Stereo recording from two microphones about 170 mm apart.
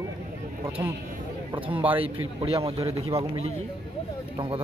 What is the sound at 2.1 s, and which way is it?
Speech, 35° right (ahead or behind).